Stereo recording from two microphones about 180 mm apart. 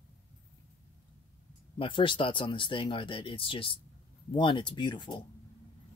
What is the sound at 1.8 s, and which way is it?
Speech, 30° left (ahead or behind).